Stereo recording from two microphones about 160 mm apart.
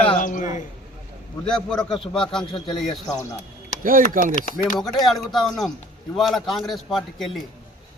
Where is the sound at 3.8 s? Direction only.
60° right (ahead or behind).